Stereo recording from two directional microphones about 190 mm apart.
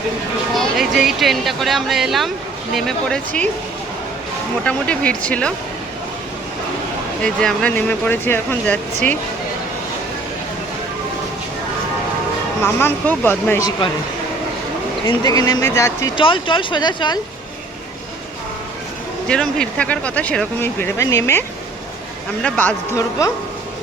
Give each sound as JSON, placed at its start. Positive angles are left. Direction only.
{"t": 0.5, "sound": "speech", "side_deg": 0}
{"t": 4.6, "sound": "speech", "side_deg": 5}
{"t": 7.2, "sound": "speech", "side_deg": 5}
{"t": 12.6, "sound": "speech", "side_deg": 10}
{"t": 15.0, "sound": "speech", "side_deg": 20}
{"t": 16.1, "sound": "speech", "side_deg": 25}
{"t": 19.3, "sound": "speech", "side_deg": 5}
{"t": 22.4, "sound": "speech", "side_deg": 10}